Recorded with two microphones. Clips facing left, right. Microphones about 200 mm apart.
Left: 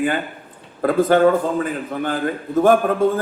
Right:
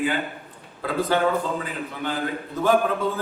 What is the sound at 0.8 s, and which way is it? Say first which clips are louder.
A man's voice: left 8 dB; 50° left (ahead or behind).